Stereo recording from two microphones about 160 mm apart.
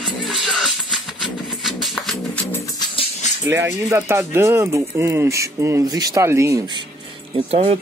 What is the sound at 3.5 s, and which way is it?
Speech, 15° right (ahead or behind).